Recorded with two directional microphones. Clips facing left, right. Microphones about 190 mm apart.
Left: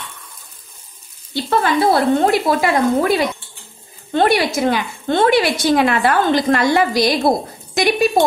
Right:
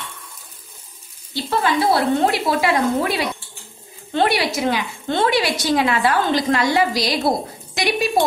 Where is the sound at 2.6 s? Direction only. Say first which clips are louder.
Left 3 dB; 45° left (ahead or behind).